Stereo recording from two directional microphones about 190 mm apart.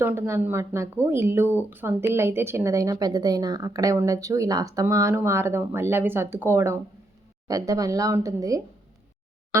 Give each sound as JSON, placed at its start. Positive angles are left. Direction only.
{"t": 0.0, "sound": "a woman's voice", "side_deg": -15}